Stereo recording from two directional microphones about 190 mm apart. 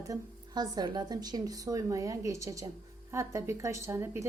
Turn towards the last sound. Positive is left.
turn(degrees=-15)  # may be behind; listen again after turning